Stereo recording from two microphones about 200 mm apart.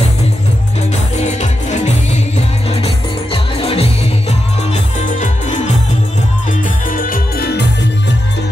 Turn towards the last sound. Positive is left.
turn(degrees=55)  # may be behind; listen again after turning